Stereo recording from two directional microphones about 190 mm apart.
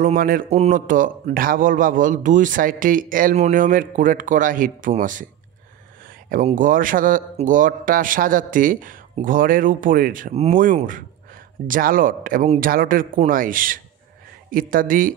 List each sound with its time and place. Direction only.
0.0 s a man's voice: 45° right (ahead or behind)
6.3 s a man's voice: 45° right (ahead or behind)